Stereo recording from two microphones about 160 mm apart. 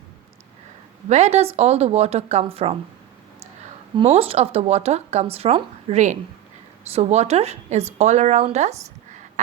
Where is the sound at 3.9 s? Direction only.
35° right (ahead or behind).